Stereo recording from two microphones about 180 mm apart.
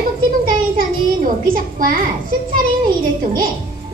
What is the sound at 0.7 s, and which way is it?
A child's voice, 50° right (ahead or behind).